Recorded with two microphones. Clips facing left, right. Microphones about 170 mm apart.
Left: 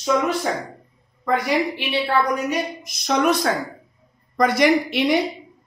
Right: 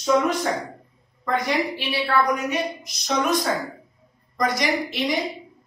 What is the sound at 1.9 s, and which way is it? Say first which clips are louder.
Speech: left 1 dB; 30° left (ahead or behind).